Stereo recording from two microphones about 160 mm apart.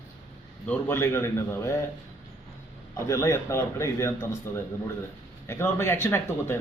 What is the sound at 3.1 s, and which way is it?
A man's voice, 15° left (ahead or behind).